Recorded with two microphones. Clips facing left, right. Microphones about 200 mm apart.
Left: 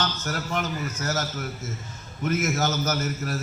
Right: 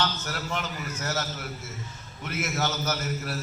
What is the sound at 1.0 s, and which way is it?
A man's voice, 45° left (ahead or behind).